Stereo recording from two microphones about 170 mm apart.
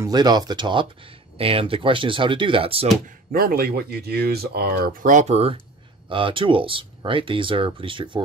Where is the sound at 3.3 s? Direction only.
60° right (ahead or behind).